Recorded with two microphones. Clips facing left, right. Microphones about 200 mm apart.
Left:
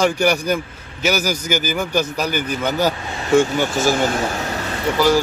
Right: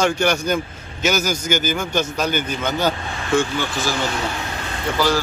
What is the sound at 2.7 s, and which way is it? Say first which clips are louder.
Speech: left 2 dB; 40° left (ahead or behind).